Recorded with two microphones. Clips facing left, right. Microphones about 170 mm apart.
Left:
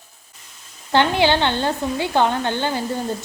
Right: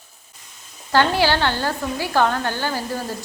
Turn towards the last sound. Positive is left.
turn(degrees=20)  # may be behind; listen again after turning